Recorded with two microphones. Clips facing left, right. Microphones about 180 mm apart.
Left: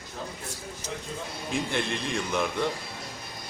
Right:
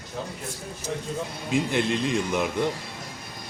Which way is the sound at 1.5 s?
15° right (ahead or behind).